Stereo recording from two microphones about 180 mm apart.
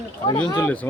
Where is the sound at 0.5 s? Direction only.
10° left (ahead or behind).